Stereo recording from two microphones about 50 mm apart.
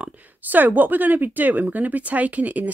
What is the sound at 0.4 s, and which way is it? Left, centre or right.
Speech, right.